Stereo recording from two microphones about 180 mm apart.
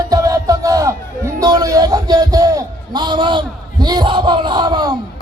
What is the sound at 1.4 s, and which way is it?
A man's voice, 20° right (ahead or behind).